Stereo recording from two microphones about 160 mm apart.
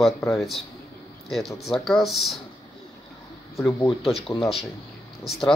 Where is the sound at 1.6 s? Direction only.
Centre (ahead or behind).